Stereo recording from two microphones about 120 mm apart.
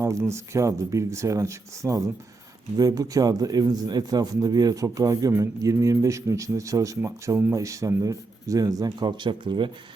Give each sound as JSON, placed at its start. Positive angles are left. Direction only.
{"t": 0.0, "sound": "a man's voice", "side_deg": -25}